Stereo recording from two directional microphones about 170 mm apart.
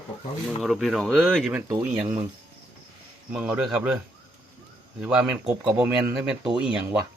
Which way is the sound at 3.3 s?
5° right (ahead or behind).